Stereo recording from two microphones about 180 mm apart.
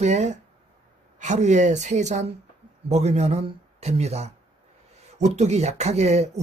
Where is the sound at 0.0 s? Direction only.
40° right (ahead or behind).